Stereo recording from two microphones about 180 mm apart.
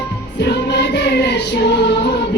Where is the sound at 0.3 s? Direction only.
70° left (ahead or behind).